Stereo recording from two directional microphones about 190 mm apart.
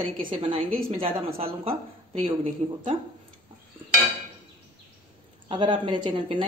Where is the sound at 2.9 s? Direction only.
30° right (ahead or behind).